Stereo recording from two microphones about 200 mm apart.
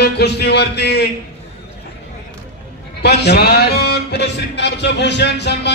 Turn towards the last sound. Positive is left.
turn(degrees=60)  # may be behind; listen again after turning